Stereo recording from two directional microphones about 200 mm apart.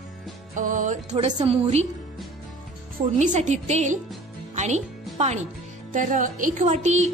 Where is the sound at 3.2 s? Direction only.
40° right (ahead or behind).